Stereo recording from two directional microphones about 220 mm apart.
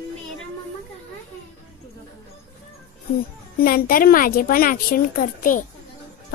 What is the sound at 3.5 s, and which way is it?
Speech, 40° left (ahead or behind).